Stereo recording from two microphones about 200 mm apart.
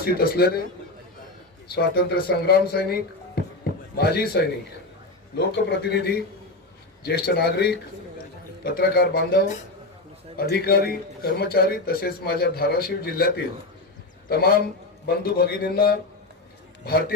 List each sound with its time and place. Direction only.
0.0 s a man's voice: 50° left (ahead or behind)
1.6 s a man's voice: 50° left (ahead or behind)
3.6 s a sound: 50° left (ahead or behind)
5.6 s a man's voice: 55° left (ahead or behind)